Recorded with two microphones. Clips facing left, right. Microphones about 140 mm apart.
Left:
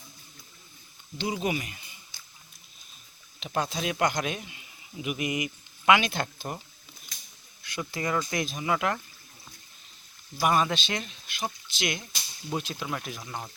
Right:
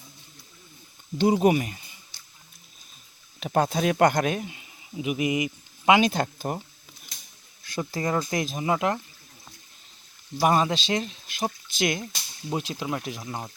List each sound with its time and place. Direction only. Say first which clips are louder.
1.2 s speech: right 9 dB; 45° right (ahead or behind)
3.4 s speech: right 7 dB; 50° right (ahead or behind)
4.9 s speech: right 5 dB; 25° right (ahead or behind)
6.0 s speech: right 7 dB; 40° right (ahead or behind)
7.6 s speech: right 4 dB; 40° right (ahead or behind)
10.4 s speech: right 3 dB; 30° right (ahead or behind)
12.5 s speech: right 3 dB; 30° right (ahead or behind)